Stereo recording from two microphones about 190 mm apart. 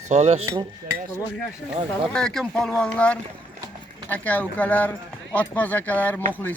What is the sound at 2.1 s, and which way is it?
Speech, 5° left (ahead or behind).